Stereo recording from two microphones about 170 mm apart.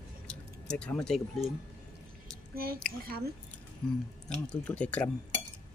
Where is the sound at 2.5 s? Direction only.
60° right (ahead or behind).